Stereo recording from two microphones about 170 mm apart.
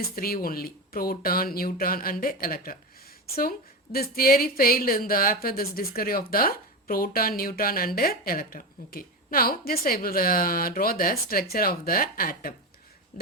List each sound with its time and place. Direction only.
0.0 s speech: 60° left (ahead or behind)
3.9 s speech: 60° left (ahead or behind)